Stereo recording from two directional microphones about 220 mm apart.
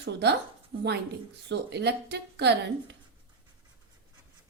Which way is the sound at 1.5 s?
50° right (ahead or behind).